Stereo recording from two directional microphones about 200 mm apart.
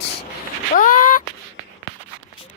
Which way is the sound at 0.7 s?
45° left (ahead or behind).